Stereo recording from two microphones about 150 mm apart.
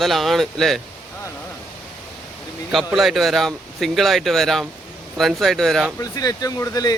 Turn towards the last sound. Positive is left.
turn(degrees=25)  # may be behind; listen again after turning